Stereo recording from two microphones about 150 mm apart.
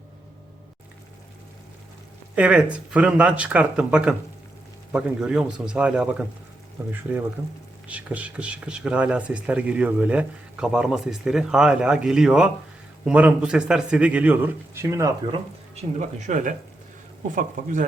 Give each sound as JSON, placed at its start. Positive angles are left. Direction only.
{"t": 2.3, "sound": "speech", "side_deg": -10}
{"t": 15.7, "sound": "speech", "side_deg": -55}